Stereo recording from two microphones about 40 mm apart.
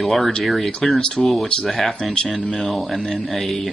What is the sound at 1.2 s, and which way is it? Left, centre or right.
Speech, centre.